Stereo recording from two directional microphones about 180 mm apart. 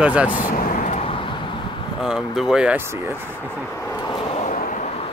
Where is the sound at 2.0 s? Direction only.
Centre (ahead or behind).